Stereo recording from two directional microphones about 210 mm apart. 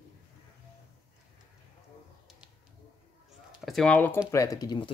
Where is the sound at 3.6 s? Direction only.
Centre (ahead or behind); by 4.9 s 20° left (ahead or behind).